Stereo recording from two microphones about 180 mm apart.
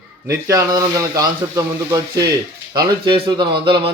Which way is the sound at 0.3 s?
20° right (ahead or behind).